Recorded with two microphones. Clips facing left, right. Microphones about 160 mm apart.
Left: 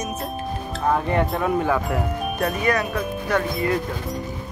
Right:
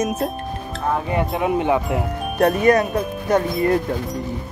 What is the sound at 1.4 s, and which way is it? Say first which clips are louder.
Speech: right 2 dB; 20° right (ahead or behind).